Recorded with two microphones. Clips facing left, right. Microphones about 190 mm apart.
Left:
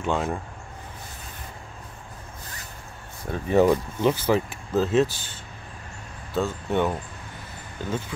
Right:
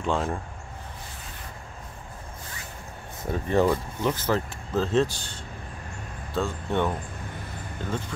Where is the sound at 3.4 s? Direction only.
10° left (ahead or behind).